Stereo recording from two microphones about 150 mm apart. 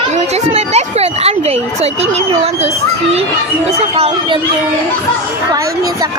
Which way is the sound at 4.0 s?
45° right (ahead or behind).